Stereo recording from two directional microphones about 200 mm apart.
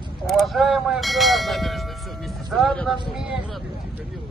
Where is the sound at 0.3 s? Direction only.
Centre (ahead or behind).